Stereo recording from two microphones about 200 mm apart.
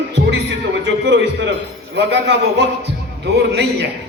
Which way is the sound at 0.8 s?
65° right (ahead or behind).